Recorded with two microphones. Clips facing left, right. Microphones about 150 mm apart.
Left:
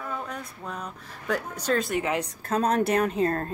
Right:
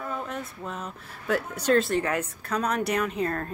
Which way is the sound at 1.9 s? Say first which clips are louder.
Right 1 dB; 15° left (ahead or behind).